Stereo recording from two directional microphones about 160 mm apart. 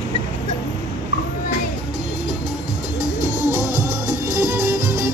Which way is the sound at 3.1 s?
10° right (ahead or behind).